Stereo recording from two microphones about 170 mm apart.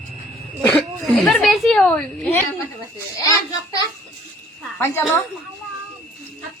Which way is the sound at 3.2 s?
20° left (ahead or behind).